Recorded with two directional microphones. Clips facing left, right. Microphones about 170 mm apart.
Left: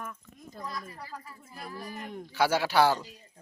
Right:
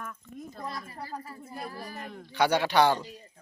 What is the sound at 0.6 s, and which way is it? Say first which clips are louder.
Speech: even; 30° right (ahead or behind).